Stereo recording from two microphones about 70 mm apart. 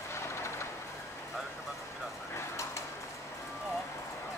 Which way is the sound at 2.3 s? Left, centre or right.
Left.